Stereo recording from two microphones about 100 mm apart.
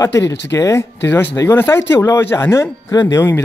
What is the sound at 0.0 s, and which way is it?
Speech, 30° left (ahead or behind).